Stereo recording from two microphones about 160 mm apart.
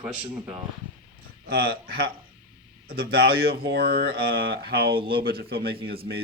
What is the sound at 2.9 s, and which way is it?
Speech, 75° right (ahead or behind).